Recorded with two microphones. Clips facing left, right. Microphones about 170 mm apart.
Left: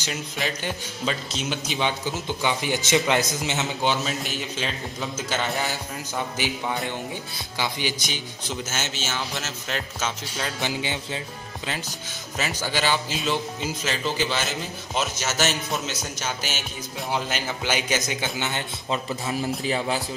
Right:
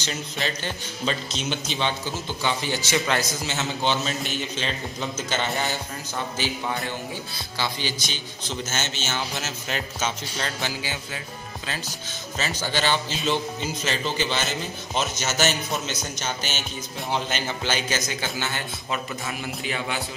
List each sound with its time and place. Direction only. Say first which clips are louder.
0.0 s speech: even; 10° left (ahead or behind)
7.5 s speech: left 1 dB; 15° left (ahead or behind)
10.6 s a man's voice: left 3 dB; 20° left (ahead or behind)
12.4 s a man's voice: even; 10° left (ahead or behind); by 20.0 s 35° left (ahead or behind)